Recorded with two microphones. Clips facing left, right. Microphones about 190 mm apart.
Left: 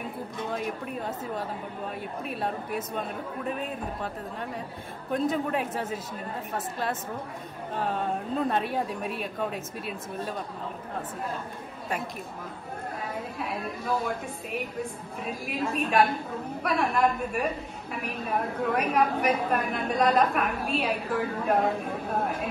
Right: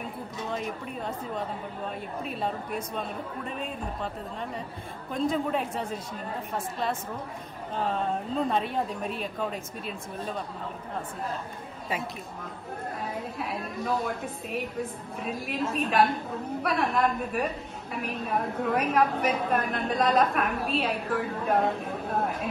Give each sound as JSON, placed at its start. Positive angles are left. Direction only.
{"t": 0.5, "sound": "a woman's voice", "side_deg": 0}
{"t": 13.4, "sound": "a woman's voice", "side_deg": 0}